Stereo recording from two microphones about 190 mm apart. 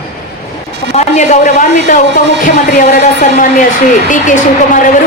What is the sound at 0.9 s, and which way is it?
A man's voice, 40° left (ahead or behind).